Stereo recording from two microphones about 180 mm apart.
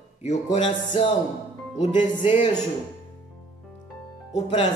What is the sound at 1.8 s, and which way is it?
Music, 30° left (ahead or behind).